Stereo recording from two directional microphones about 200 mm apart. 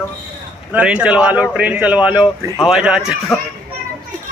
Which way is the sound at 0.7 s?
5° right (ahead or behind).